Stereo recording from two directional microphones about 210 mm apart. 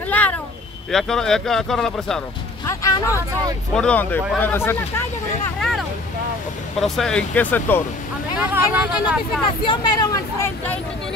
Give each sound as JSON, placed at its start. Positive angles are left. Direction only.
{"t": 0.9, "sound": "speech", "side_deg": 0}
{"t": 2.6, "sound": "speech", "side_deg": 15}
{"t": 5.6, "sound": "speech", "side_deg": 0}
{"t": 8.4, "sound": "speech", "side_deg": -5}
{"t": 9.7, "sound": "speech", "side_deg": 20}